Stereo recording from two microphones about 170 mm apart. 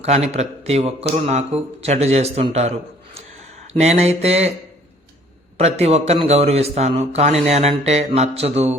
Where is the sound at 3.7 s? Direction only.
40° right (ahead or behind).